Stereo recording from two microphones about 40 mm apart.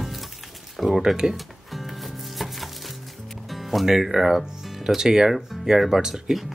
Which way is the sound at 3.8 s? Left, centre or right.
Centre.